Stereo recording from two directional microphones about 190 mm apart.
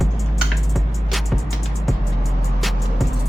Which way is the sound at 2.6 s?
Centre (ahead or behind).